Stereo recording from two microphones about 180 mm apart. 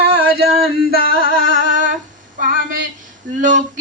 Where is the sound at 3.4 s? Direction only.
45° right (ahead or behind).